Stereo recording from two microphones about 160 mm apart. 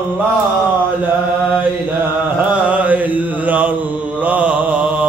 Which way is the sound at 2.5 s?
10° right (ahead or behind).